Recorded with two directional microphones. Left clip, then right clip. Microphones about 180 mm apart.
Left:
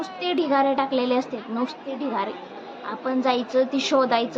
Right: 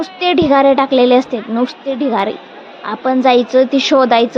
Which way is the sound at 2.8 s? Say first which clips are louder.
Right 12 dB; 40° right (ahead or behind).